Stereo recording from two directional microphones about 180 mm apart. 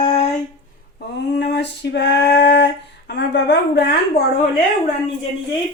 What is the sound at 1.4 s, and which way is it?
Female singing, 70° left (ahead or behind).